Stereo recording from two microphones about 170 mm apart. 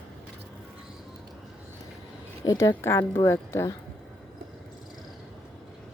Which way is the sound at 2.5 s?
20° left (ahead or behind).